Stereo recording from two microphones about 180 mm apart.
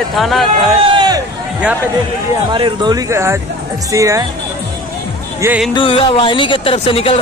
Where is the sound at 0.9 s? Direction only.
25° right (ahead or behind).